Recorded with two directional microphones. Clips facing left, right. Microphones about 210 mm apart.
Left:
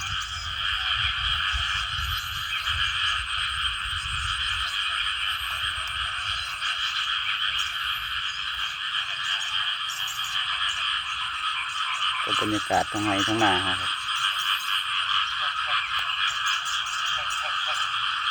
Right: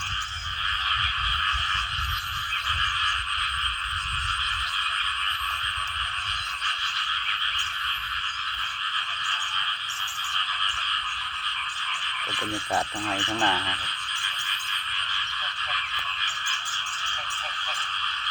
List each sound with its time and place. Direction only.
12.3 s speech: 20° left (ahead or behind)